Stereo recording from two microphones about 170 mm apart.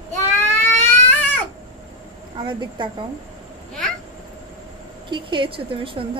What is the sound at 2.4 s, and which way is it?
Speech, 30° right (ahead or behind).